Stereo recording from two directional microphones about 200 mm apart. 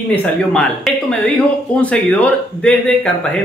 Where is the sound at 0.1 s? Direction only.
5° left (ahead or behind).